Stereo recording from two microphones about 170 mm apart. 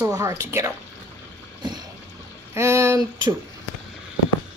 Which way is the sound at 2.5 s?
15° right (ahead or behind).